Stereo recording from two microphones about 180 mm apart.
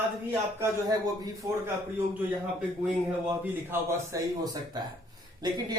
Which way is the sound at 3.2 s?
10° right (ahead or behind).